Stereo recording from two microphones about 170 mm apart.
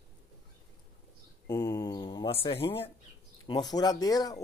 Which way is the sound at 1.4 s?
20° left (ahead or behind).